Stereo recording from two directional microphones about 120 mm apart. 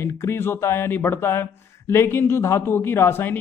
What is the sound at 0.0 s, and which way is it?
Speech, 20° left (ahead or behind).